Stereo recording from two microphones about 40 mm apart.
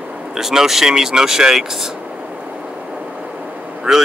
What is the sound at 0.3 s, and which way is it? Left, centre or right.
Speech, centre.